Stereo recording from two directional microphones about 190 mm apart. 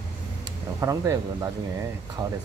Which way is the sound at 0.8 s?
15° right (ahead or behind).